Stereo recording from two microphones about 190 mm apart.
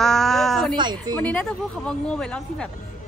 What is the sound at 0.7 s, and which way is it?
Speech, 25° right (ahead or behind).